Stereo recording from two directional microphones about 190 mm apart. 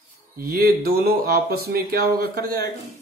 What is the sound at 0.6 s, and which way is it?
Speech, 55° right (ahead or behind).